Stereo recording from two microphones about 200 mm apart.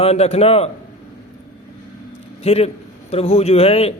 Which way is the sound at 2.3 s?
30° left (ahead or behind).